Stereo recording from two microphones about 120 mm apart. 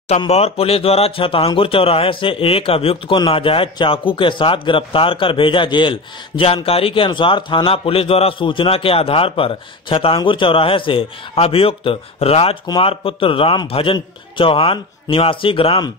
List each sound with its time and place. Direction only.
0.3 s a man's voice: 55° left (ahead or behind)